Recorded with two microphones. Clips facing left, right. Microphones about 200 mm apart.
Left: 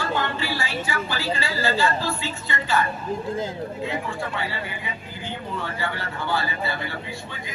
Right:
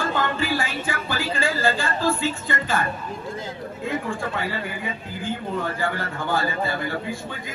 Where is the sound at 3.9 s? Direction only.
50° right (ahead or behind).